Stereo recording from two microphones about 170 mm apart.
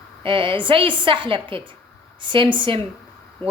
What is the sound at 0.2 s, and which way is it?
A woman's voice, 30° right (ahead or behind).